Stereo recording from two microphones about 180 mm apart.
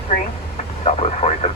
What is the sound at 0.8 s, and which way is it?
Speech, 35° left (ahead or behind).